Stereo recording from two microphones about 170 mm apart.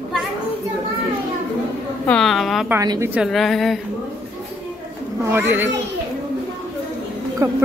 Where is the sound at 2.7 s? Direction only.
20° right (ahead or behind).